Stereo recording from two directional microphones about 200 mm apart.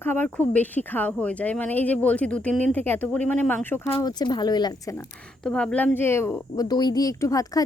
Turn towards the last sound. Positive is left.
turn(degrees=15)  # may be behind; listen again after turning